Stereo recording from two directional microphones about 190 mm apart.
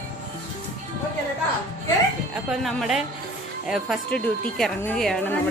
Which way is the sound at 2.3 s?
Centre (ahead or behind).